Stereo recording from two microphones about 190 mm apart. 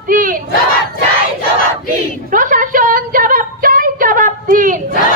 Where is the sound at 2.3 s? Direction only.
45° right (ahead or behind).